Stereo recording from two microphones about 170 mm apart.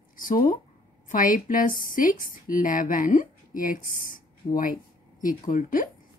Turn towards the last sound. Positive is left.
turn(degrees=50)  # may be behind; listen again after turning